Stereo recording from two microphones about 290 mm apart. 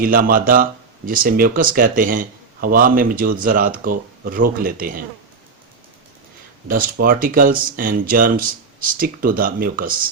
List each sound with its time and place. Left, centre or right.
0.0 s speech: right
7.0 s speech: right